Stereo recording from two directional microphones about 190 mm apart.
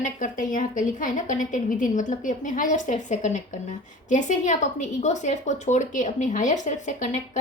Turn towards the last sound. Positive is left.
turn(degrees=40)  # may be behind; listen again after turning